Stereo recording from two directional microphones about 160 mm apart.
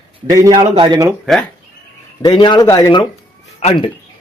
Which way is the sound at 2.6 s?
20° left (ahead or behind).